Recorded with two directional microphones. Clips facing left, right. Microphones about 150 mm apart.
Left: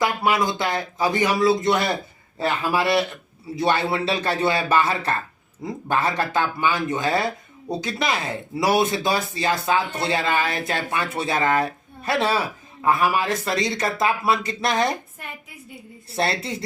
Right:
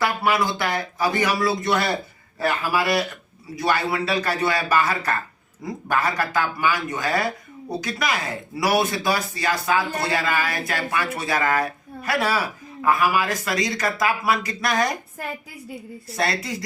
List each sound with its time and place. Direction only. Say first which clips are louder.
0.0 s speech: left 1 dB; 20° left (ahead or behind)
16.1 s speech: left 1 dB; 30° left (ahead or behind)